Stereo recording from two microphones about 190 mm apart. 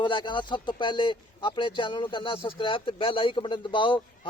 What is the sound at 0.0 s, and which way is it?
Speech, 25° left (ahead or behind).